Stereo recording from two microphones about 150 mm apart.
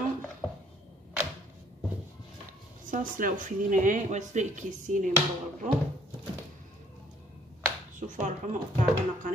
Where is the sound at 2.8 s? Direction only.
65° right (ahead or behind).